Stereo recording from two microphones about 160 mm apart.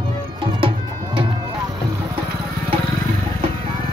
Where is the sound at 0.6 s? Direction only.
35° right (ahead or behind).